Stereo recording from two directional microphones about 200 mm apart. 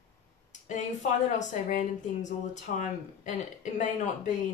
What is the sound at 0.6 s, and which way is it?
A woman's voice, 40° left (ahead or behind).